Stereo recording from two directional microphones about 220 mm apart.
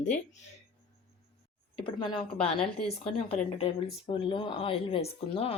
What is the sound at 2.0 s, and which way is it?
Speech, 20° left (ahead or behind).